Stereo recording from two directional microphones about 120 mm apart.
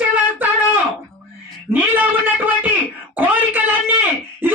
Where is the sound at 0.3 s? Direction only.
15° right (ahead or behind).